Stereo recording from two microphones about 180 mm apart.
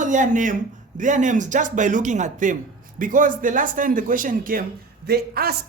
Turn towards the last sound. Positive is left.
turn(degrees=-60)  # may be behind; listen again after turning